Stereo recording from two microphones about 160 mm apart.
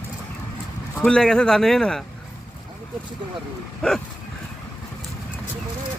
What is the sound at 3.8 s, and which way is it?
Speech, 5° left (ahead or behind).